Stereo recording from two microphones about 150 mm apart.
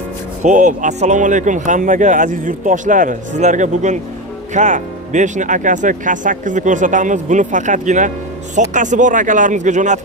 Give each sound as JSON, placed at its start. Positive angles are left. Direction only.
{"t": 0.4, "sound": "speech", "side_deg": -60}